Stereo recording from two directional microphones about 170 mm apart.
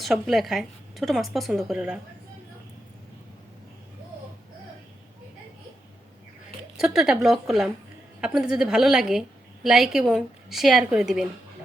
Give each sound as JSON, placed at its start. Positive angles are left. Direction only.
{"t": 0.0, "sound": "a woman's voice", "side_deg": 0}
{"t": 6.7, "sound": "a woman's voice", "side_deg": -5}